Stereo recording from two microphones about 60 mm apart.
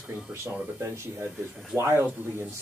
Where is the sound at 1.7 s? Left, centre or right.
Right.